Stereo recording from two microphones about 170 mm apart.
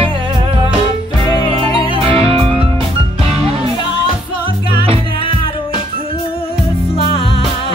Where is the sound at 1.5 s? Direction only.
35° right (ahead or behind).